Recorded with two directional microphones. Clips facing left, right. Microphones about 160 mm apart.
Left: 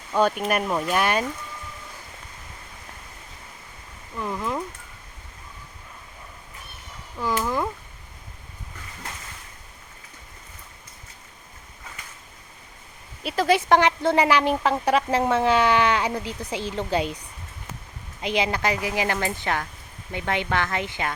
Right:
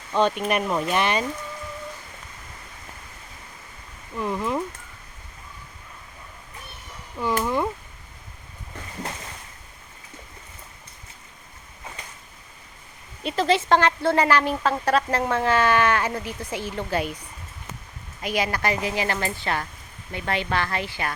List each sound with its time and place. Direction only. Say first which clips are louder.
0.1 s speech: even; 5° left (ahead or behind)
4.2 s speech: right 2 dB; centre (ahead or behind)
7.2 s speech: right 1 dB; centre (ahead or behind)
13.2 s a woman's voice: left 1 dB; 10° left (ahead or behind)
18.2 s a woman's voice: left 1 dB; 20° left (ahead or behind)